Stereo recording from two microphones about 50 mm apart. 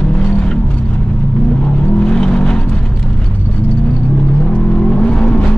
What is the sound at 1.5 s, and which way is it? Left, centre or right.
Vehicle, centre.